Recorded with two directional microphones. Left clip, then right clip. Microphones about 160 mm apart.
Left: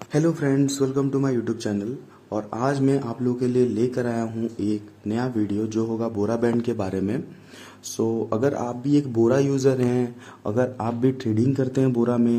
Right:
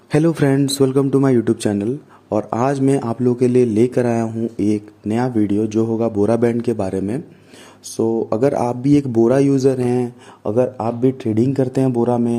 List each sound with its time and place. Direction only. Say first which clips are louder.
0.1 s a man's voice: right 6 dB; 50° right (ahead or behind); by 12.4 s 30° right (ahead or behind)